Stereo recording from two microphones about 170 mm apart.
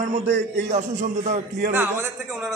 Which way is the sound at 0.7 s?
45° right (ahead or behind).